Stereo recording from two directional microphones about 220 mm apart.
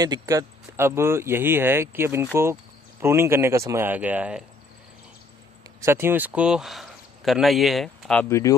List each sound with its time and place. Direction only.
0.0 s speech: 15° right (ahead or behind)
5.8 s speech: 10° right (ahead or behind); by 8.5 s 15° left (ahead or behind)